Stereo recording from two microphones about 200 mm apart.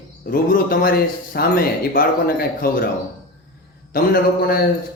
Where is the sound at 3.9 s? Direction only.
50° left (ahead or behind).